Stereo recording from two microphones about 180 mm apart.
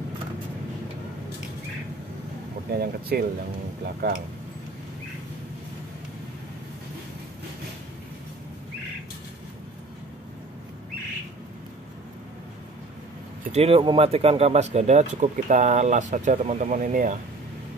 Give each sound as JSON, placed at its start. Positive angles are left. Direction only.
{"t": 2.7, "sound": "speech", "side_deg": -60}
{"t": 13.5, "sound": "speech", "side_deg": -35}